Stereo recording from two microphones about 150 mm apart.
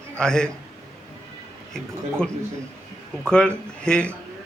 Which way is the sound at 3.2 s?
5° left (ahead or behind).